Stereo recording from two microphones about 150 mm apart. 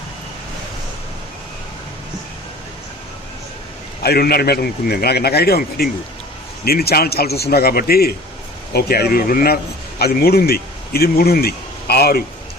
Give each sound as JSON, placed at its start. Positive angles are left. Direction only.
{"t": 4.0, "sound": "a man's voice", "side_deg": 90}
{"t": 10.0, "sound": "speech", "side_deg": 90}